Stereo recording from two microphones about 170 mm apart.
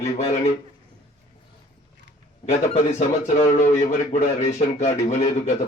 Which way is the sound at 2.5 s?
40° left (ahead or behind).